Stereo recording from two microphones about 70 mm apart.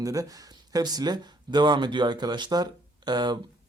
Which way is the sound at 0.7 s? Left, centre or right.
Right.